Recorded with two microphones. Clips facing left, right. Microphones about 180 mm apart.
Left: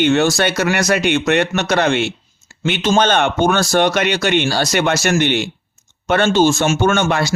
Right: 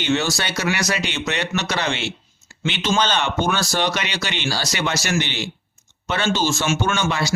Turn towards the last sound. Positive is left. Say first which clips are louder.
# left 6 dB
turn(degrees=55)  # may be behind; listen again after turning